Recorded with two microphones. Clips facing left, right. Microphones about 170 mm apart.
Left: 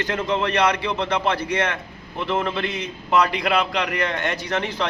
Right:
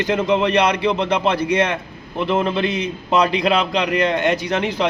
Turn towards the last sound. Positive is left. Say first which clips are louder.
# right 4 dB
turn(degrees=-15)  # may be behind; listen again after turning